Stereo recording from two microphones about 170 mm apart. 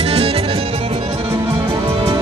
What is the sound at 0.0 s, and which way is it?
Music, 35° right (ahead or behind).